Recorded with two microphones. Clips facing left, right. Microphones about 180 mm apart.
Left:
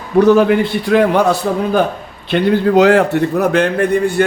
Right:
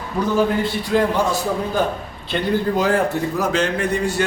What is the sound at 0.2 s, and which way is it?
A man's voice, 75° left (ahead or behind).